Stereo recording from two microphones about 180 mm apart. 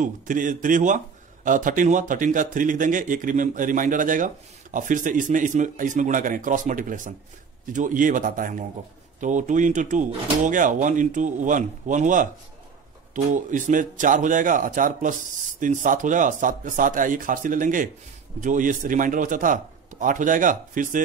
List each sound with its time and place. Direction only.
0.0 s a man's voice: 45° right (ahead or behind)